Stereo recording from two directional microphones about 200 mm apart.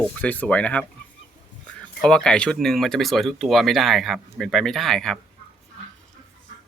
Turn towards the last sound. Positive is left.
turn(degrees=0)  # may be behind; listen again after turning